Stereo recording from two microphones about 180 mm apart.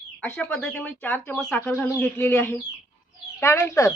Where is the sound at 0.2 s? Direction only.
5° left (ahead or behind).